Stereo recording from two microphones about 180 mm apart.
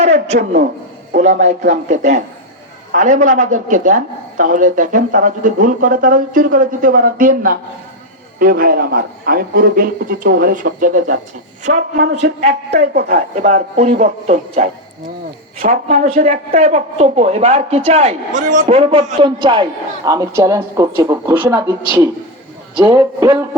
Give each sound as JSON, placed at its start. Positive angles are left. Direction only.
{"t": 0.0, "sound": "a sound", "side_deg": -35}
{"t": 1.1, "sound": "speech", "side_deg": -40}
{"t": 11.7, "sound": "a man's voice", "side_deg": -60}
{"t": 12.1, "sound": "speech", "side_deg": -40}
{"t": 12.5, "sound": "speech", "side_deg": -60}
{"t": 18.7, "sound": "a man's voice", "side_deg": -30}